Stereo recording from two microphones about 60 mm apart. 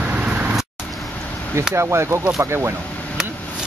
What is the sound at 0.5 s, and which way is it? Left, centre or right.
Vehicle, centre.